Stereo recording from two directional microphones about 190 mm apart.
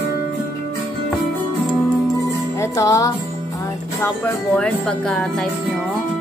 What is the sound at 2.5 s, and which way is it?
Music, 15° left (ahead or behind).